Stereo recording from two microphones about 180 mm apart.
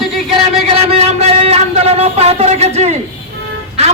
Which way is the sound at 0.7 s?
35° right (ahead or behind).